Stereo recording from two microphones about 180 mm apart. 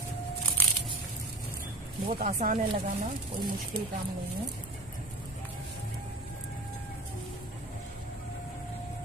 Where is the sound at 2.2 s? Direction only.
45° right (ahead or behind).